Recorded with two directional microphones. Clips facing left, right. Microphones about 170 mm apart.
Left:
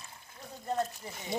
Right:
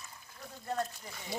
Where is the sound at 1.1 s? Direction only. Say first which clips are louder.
Left 4 dB; 20° left (ahead or behind).